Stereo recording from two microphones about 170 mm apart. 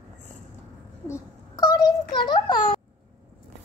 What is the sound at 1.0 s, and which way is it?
A child's voice, 20° left (ahead or behind).